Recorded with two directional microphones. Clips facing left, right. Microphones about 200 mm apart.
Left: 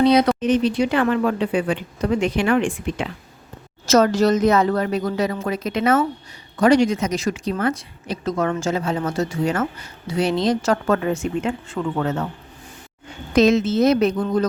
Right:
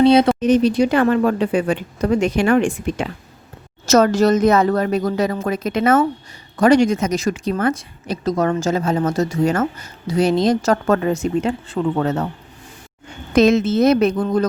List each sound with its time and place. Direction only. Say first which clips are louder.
0.0 s speech: right 3 dB; 25° right (ahead or behind)
0.3 s a woman's voice: right 4 dB; 40° right (ahead or behind)
13.3 s speech: right 2 dB; 55° right (ahead or behind)